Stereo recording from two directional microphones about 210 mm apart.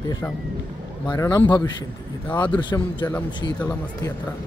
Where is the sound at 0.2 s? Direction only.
5° left (ahead or behind).